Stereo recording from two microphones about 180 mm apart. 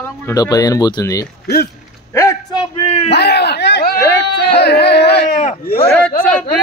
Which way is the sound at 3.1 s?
65° left (ahead or behind).